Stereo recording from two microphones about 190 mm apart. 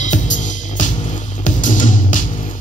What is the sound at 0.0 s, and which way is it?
Music, 40° left (ahead or behind).